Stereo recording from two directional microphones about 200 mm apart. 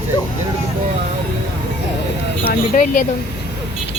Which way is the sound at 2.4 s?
40° left (ahead or behind).